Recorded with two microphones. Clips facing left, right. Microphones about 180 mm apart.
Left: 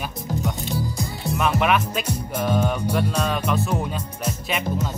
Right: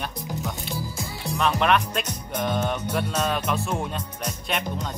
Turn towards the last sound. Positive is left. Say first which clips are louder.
# left 3 dB
turn(degrees=5)  # may be behind; listen again after turning